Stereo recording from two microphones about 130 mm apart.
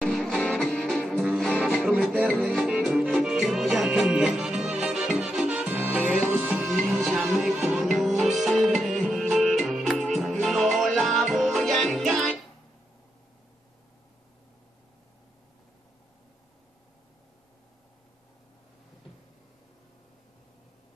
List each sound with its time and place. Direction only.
0.0 s music: 5° left (ahead or behind)